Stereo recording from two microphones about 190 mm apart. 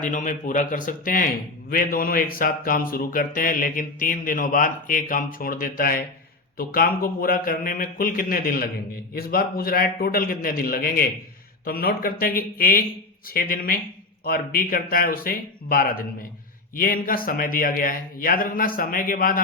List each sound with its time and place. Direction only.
0.0 s speech: 40° left (ahead or behind)